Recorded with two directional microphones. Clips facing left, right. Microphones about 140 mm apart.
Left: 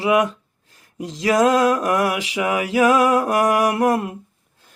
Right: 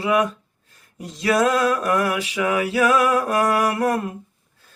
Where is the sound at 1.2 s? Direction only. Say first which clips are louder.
Left 3 dB; 20° left (ahead or behind).